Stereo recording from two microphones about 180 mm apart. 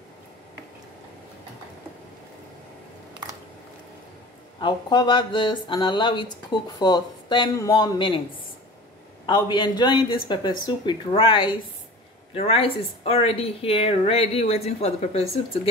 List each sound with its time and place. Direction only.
4.6 s speech: 25° left (ahead or behind)
9.2 s a woman's voice: 25° left (ahead or behind)